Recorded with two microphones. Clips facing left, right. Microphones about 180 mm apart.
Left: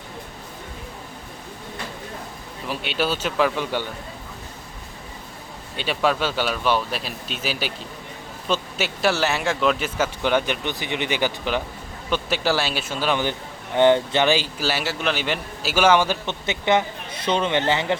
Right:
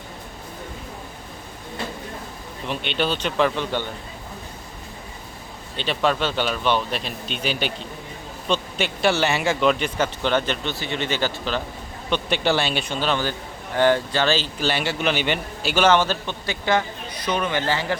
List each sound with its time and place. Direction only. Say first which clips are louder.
2.6 s speech: even; 5° left (ahead or behind)
5.7 s a man's voice: even; 10° left (ahead or behind)
12.1 s a man's voice: right 1 dB; 5° left (ahead or behind); by 17.9 s 20° left (ahead or behind)